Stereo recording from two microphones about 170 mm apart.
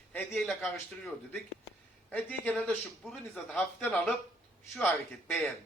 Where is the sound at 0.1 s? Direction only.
5° left (ahead or behind).